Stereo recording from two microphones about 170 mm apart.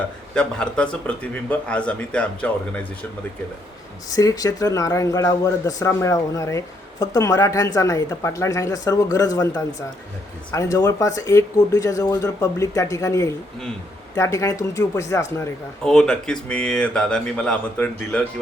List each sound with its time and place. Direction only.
0.3 s a man's voice: 5° left (ahead or behind)
4.1 s a man's voice: 20° left (ahead or behind)
15.8 s speech: 5° left (ahead or behind)